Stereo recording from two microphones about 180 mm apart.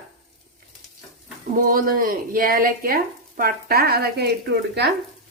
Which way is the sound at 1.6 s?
50° right (ahead or behind).